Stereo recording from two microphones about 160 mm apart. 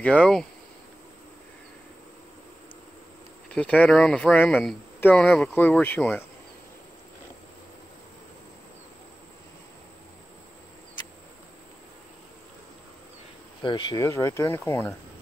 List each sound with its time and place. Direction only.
0.0 s speech: 5° left (ahead or behind)
3.5 s speech: 10° left (ahead or behind)
5.8 s speech: 10° left (ahead or behind)
13.6 s speech: 30° left (ahead or behind)